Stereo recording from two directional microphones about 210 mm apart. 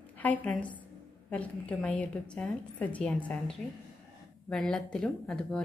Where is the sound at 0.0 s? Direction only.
5° left (ahead or behind).